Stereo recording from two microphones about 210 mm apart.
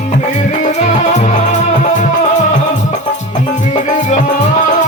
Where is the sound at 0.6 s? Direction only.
35° left (ahead or behind).